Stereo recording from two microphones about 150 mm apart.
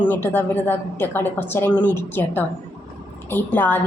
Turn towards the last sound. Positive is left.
turn(degrees=10)  # may be behind; listen again after turning